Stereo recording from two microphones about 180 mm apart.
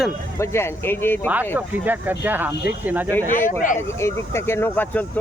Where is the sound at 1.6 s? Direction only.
10° right (ahead or behind).